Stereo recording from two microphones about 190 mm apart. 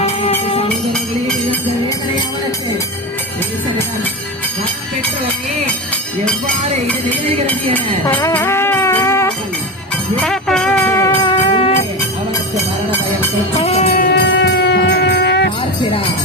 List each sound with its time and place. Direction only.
0.0 s music: 35° left (ahead or behind)
6.8 s music: 10° left (ahead or behind)
10.2 s music: 5° left (ahead or behind)
11.3 s music: 30° left (ahead or behind)
13.7 s music: 35° left (ahead or behind)
13.9 s music: 50° left (ahead or behind)
14.2 s music: 70° left (ahead or behind)